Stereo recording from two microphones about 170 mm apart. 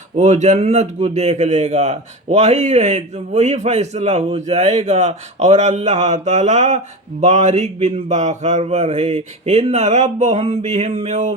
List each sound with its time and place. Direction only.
0.2 s a man's voice: 45° right (ahead or behind)